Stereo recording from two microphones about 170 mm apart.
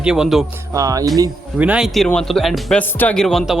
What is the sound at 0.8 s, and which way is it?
Speech, 20° right (ahead or behind).